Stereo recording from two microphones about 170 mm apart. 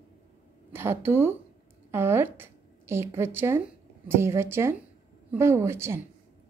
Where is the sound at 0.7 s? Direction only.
15° right (ahead or behind).